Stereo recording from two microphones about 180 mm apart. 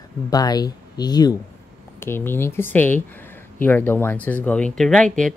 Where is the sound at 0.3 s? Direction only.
20° left (ahead or behind).